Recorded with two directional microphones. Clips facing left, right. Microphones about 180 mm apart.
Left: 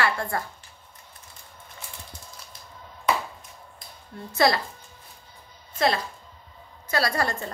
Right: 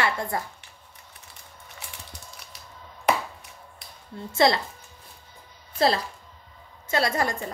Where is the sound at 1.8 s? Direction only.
70° right (ahead or behind).